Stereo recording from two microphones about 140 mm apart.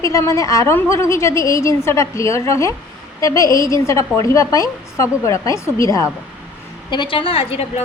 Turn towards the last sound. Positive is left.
turn(degrees=45)  # may be behind; listen again after turning